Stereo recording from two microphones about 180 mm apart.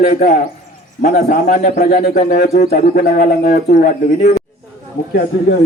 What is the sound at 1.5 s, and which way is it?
Bird, 60° left (ahead or behind).